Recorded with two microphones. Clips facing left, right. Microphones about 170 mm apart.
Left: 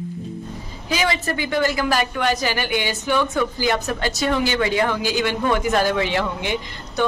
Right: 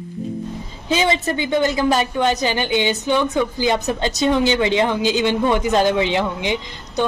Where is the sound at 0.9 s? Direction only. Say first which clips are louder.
Right 4 dB; 25° right (ahead or behind).